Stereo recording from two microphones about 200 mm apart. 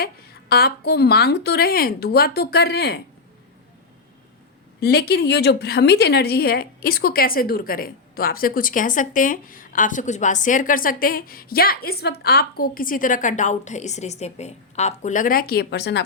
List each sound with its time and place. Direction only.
0.0 s a woman's voice: 50° left (ahead or behind)
4.8 s a woman's voice: 50° left (ahead or behind)